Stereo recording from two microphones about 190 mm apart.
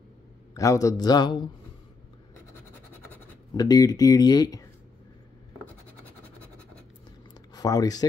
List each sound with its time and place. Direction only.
0.6 s speech: 15° left (ahead or behind)
3.5 s speech: 20° left (ahead or behind)
6.0 s vehicle: 10° left (ahead or behind)
7.5 s speech: 20° left (ahead or behind)